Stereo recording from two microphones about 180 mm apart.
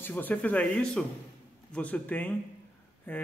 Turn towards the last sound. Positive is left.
turn(degrees=10)  # may be behind; listen again after turning